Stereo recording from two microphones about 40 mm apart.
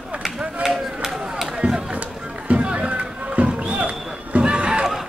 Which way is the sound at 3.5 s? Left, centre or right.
Right.